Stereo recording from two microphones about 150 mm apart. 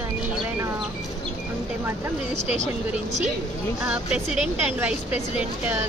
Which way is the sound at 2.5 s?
50° right (ahead or behind).